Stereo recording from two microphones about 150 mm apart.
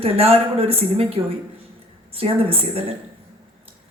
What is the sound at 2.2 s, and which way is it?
Speech, 40° right (ahead or behind).